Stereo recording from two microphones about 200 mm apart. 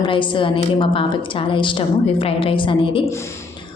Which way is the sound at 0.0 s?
25° left (ahead or behind).